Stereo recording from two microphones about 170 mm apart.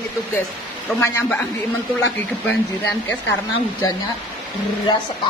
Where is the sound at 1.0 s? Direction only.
15° left (ahead or behind).